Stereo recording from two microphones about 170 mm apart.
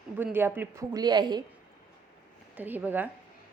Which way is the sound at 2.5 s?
10° right (ahead or behind).